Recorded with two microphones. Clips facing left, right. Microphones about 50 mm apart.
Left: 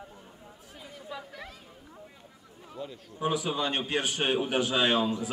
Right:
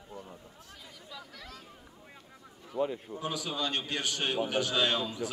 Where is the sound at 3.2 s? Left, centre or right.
Left.